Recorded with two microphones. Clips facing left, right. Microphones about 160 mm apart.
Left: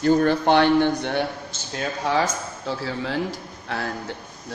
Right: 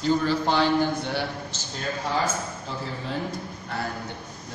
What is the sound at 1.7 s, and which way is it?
Speech, 70° left (ahead or behind).